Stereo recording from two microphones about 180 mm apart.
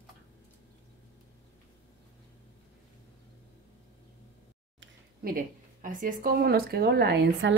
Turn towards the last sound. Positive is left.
turn(degrees=-65)  # may be behind; listen again after turning